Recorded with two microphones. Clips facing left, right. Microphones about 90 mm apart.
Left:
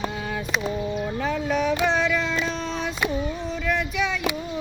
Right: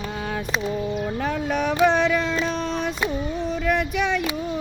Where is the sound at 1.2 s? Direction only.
50° right (ahead or behind).